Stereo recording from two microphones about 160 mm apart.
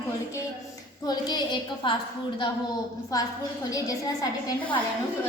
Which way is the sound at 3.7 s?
20° left (ahead or behind).